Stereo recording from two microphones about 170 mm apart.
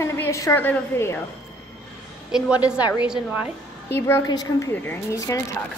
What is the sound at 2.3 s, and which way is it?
A woman's voice, 5° right (ahead or behind).